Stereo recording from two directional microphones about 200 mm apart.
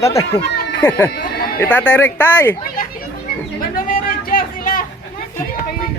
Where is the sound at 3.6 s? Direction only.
45° left (ahead or behind).